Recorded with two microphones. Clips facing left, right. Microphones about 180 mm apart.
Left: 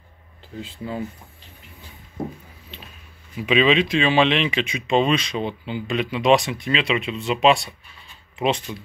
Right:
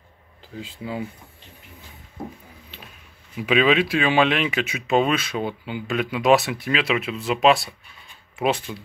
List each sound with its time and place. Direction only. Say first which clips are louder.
0.8 s speech: even; 5° right (ahead or behind)
3.3 s speech: left 1 dB; 10° right (ahead or behind)